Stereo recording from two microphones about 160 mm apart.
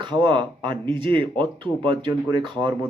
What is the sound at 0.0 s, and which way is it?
Speech, 30° right (ahead or behind).